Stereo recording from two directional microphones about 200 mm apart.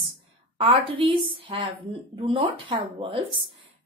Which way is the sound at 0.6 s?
25° right (ahead or behind).